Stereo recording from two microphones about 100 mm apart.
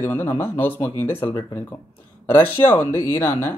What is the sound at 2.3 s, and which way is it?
A man's voice, 20° left (ahead or behind).